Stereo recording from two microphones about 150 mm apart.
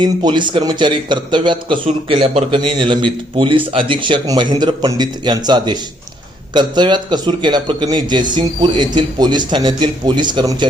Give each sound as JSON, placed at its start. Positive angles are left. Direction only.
{"t": 0.0, "sound": "a man's voice", "side_deg": -30}